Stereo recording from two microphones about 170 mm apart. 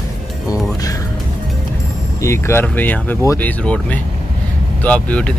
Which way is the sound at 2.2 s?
15° left (ahead or behind).